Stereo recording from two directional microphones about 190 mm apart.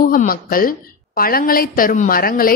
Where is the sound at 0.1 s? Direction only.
50° left (ahead or behind).